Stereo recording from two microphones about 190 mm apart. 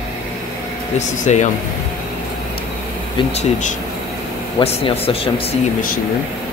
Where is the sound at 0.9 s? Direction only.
40° left (ahead or behind).